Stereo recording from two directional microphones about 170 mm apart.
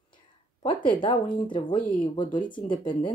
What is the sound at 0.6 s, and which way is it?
Speech, 30° left (ahead or behind).